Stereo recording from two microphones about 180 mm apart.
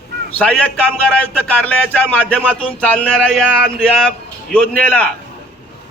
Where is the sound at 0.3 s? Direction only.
10° left (ahead or behind).